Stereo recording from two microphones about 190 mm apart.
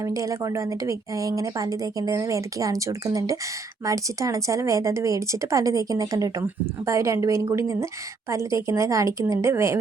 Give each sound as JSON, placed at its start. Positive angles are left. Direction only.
{"t": 0.0, "sound": "a woman's voice", "side_deg": -15}